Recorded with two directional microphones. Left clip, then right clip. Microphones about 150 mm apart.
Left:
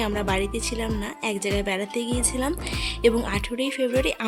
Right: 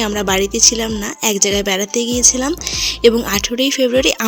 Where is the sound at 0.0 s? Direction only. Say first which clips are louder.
Right 8 dB; 35° right (ahead or behind).